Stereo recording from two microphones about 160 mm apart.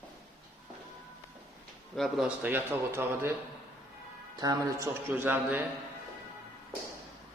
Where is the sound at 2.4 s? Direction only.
10° right (ahead or behind).